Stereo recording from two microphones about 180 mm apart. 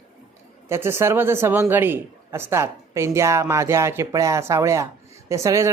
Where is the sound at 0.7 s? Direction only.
15° right (ahead or behind).